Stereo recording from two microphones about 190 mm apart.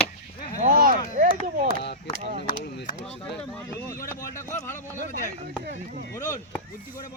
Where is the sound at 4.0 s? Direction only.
45° left (ahead or behind).